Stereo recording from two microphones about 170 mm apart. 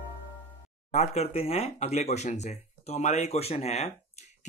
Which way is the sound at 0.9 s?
40° left (ahead or behind).